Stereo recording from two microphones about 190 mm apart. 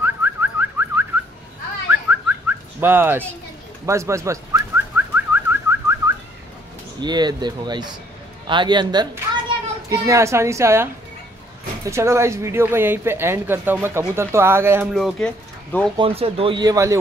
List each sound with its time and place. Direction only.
0.0 s car alarm: 10° right (ahead or behind)
1.9 s whistling: 10° right (ahead or behind)
3.8 s bird: 15° right (ahead or behind)
7.0 s speech: 20° right (ahead or behind)
15.0 s speech: centre (ahead or behind)
16.0 s speech: 30° right (ahead or behind)